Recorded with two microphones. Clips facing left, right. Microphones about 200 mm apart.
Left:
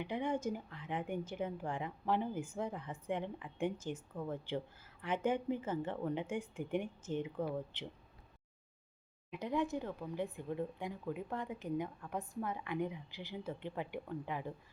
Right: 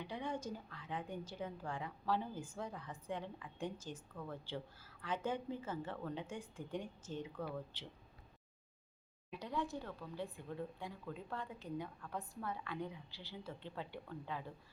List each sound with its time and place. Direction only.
0.0 s a woman's voice: 20° left (ahead or behind)
9.4 s a woman's voice: 20° left (ahead or behind)